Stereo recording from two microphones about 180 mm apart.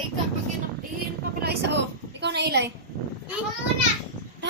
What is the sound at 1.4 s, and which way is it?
Vehicle, 65° right (ahead or behind).